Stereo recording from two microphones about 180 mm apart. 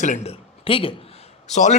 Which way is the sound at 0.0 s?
40° left (ahead or behind).